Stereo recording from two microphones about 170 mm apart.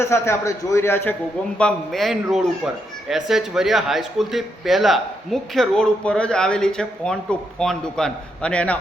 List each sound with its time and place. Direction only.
0.0 s a man's voice: 15° left (ahead or behind)